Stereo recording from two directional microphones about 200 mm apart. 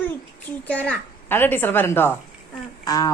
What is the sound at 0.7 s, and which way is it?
A woman's voice, 5° left (ahead or behind).